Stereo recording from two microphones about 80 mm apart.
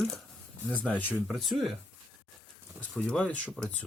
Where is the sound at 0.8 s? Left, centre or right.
Centre.